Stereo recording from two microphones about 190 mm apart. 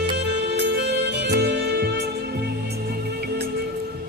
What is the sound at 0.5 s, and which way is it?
Music, 60° right (ahead or behind).